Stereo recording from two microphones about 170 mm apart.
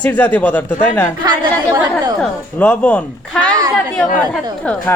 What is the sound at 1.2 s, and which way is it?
Speech, 25° right (ahead or behind).